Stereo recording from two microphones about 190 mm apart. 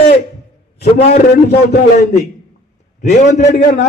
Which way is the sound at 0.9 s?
55° left (ahead or behind).